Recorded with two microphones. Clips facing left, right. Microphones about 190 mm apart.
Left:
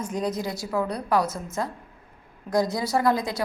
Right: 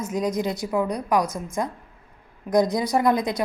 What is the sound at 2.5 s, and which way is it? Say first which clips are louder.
Speech: right 3 dB; 20° right (ahead or behind).